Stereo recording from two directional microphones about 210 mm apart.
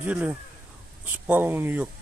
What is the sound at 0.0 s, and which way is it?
Speech, 5° right (ahead or behind).